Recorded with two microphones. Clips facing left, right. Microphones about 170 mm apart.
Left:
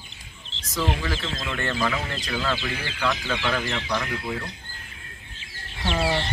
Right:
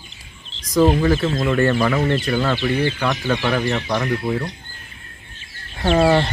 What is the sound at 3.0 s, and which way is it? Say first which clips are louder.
Speech: right 6 dB; 30° right (ahead or behind).